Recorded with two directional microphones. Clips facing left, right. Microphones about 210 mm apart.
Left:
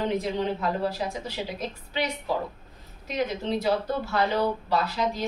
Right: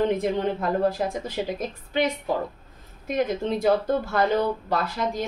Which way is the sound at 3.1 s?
50° right (ahead or behind).